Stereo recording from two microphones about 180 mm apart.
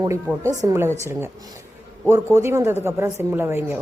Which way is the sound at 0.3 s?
15° right (ahead or behind).